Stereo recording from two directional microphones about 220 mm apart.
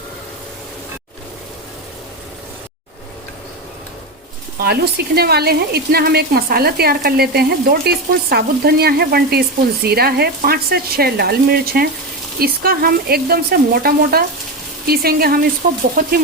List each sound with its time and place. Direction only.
4.6 s speech: 45° right (ahead or behind)
16.0 s frying: 40° right (ahead or behind)